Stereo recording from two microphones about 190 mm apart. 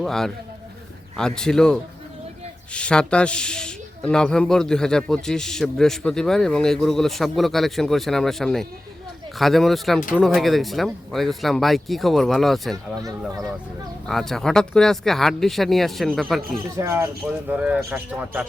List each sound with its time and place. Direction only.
0.0 s speech: centre (ahead or behind)
12.7 s speech: 20° right (ahead or behind)
14.1 s speech: centre (ahead or behind)
16.7 s speech: 15° right (ahead or behind)